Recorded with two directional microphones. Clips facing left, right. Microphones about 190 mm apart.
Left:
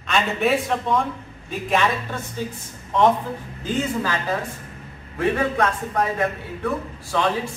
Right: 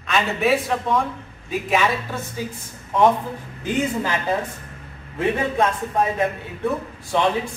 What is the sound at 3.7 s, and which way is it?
A man's voice, 20° right (ahead or behind).